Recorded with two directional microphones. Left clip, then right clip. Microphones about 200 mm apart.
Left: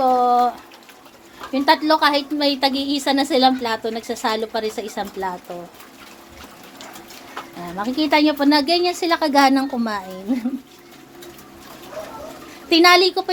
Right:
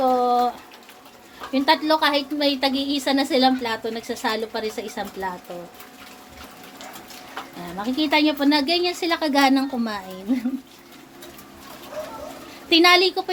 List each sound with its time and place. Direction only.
0.0 s a sound: 5° left (ahead or behind)
1.5 s a woman's voice: 10° left (ahead or behind)
7.8 s a woman's voice: 10° left (ahead or behind)
12.7 s a woman's voice: 10° left (ahead or behind)